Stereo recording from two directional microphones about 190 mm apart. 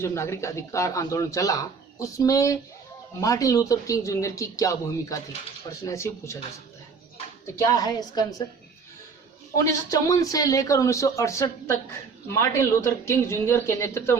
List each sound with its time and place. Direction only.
0.0 s speech: 15° left (ahead or behind)
7.4 s a woman's voice: 15° left (ahead or behind)
9.9 s speech: 20° left (ahead or behind)